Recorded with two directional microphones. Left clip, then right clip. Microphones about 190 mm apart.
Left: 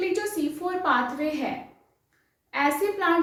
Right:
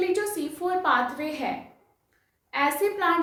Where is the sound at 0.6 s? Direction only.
25° right (ahead or behind).